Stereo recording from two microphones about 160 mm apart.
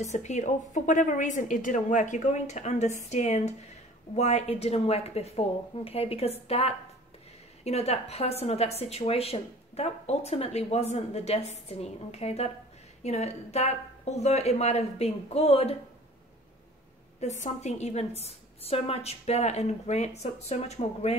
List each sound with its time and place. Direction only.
0.0 s a woman's voice: 50° left (ahead or behind)
17.2 s a woman's voice: 45° left (ahead or behind)